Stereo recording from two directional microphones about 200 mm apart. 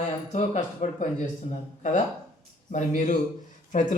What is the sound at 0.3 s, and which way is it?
Speech, 35° left (ahead or behind).